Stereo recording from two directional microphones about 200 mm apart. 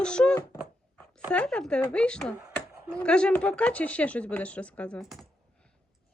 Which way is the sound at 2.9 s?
5° left (ahead or behind).